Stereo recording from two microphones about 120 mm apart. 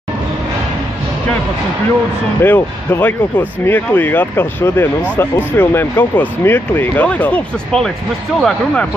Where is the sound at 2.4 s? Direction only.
15° left (ahead or behind).